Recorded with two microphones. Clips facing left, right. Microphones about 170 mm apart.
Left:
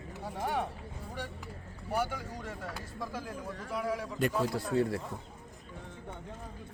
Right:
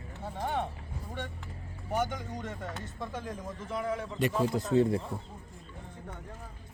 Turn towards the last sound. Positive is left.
turn(degrees=-20)  # may be behind; listen again after turning